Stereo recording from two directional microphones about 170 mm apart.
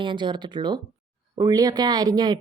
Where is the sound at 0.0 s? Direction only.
25° right (ahead or behind).